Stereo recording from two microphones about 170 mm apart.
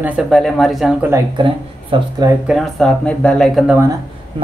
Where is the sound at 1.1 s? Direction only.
15° right (ahead or behind).